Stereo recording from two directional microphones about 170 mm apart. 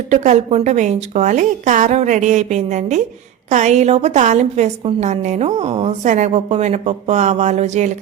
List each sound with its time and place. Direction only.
0.1 s a woman's voice: 45° right (ahead or behind)